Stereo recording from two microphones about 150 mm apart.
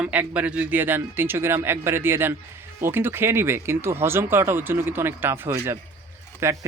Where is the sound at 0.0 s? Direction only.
10° right (ahead or behind).